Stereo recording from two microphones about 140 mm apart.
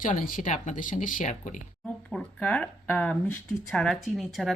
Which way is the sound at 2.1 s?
5° left (ahead or behind).